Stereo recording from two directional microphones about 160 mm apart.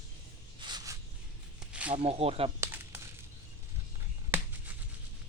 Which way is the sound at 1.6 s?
5° right (ahead or behind).